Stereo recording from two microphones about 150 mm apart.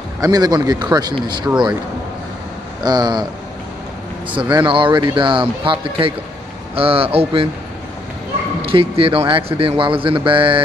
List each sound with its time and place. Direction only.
0.2 s speech: 25° right (ahead or behind)
2.8 s speech: 30° right (ahead or behind)
4.3 s speech: 35° right (ahead or behind)
8.6 s speech: 40° right (ahead or behind)